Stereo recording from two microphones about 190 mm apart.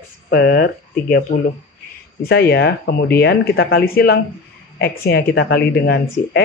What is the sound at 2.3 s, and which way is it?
Speech, 60° left (ahead or behind).